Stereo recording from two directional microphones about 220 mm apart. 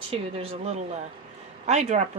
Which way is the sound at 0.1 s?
25° right (ahead or behind).